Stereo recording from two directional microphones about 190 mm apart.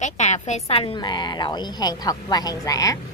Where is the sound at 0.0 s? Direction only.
35° left (ahead or behind).